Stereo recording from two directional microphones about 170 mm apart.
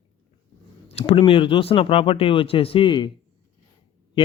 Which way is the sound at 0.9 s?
35° left (ahead or behind).